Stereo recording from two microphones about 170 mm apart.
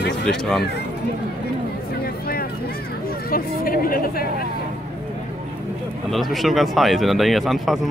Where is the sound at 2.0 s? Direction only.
60° left (ahead or behind).